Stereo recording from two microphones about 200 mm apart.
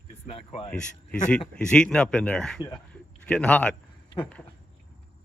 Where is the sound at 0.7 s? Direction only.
5° left (ahead or behind).